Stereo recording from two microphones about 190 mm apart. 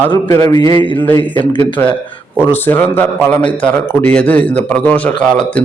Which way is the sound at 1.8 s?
10° left (ahead or behind).